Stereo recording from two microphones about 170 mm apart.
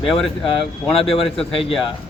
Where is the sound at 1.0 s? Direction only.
35° left (ahead or behind).